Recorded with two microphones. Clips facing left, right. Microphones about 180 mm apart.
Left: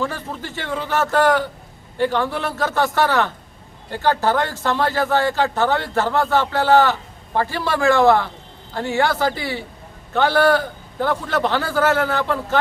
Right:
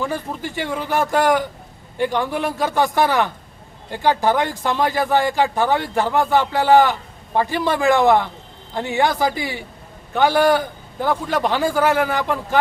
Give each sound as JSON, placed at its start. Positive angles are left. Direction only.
{"t": 0.0, "sound": "speech", "side_deg": -15}